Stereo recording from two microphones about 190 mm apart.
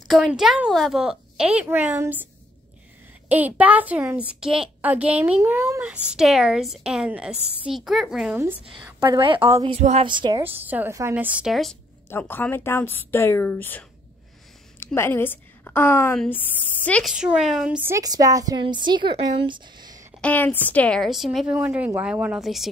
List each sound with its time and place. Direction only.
0.1 s a woman's voice: centre (ahead or behind)
3.3 s a woman's voice: 10° right (ahead or behind)
8.6 s a woman's voice: 25° right (ahead or behind)
10.0 s speech: 25° right (ahead or behind)
10.4 s a woman's voice: 10° right (ahead or behind)
12.1 s a woman's voice: 10° left (ahead or behind)
17.1 s speech: 5° right (ahead or behind); by 20.1 s 20° right (ahead or behind)
20.2 s a woman's voice: 10° left (ahead or behind)